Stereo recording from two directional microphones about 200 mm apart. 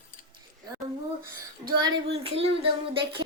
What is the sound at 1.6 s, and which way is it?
Child singing, 20° right (ahead or behind).